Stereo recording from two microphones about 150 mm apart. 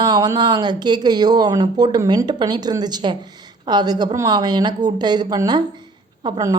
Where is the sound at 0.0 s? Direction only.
25° right (ahead or behind).